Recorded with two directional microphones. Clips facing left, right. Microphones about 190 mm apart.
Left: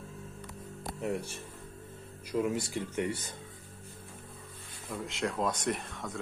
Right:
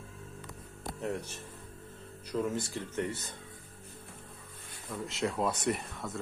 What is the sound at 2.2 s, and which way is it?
Speech, 10° left (ahead or behind).